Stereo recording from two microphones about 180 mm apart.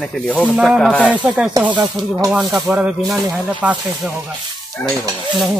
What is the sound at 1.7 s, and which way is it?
Speech, 25° right (ahead or behind).